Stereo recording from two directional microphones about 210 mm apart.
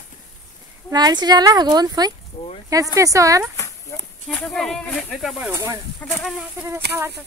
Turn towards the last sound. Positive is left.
turn(degrees=-10)  # may be behind; listen again after turning